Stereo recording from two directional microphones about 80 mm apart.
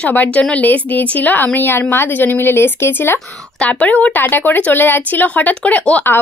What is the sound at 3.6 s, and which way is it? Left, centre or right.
Speech, centre.